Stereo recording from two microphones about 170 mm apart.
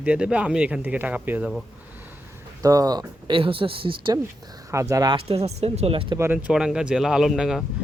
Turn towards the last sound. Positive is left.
turn(degrees=0)  # may be behind; listen again after turning